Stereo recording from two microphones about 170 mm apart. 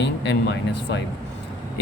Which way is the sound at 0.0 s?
90° left.